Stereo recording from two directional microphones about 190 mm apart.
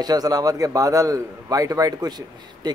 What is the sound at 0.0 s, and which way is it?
A man's voice, 20° right (ahead or behind).